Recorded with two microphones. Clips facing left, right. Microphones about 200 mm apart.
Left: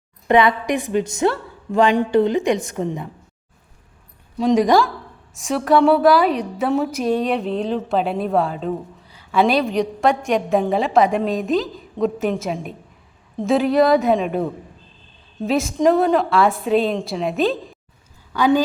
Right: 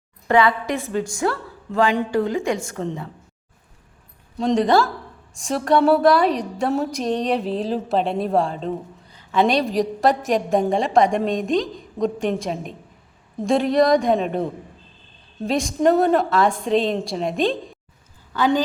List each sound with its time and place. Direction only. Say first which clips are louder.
0.3 s a woman's voice: left 2 dB; 20° left (ahead or behind)
4.4 s speech: left 2 dB; 5° left (ahead or behind)
5.3 s speech: left 2 dB; centre (ahead or behind)
15.4 s speech: left 1 dB; 5° left (ahead or behind)